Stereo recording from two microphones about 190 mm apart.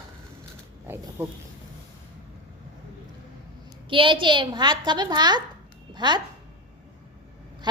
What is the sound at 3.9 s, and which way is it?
A woman's voice, 25° right (ahead or behind).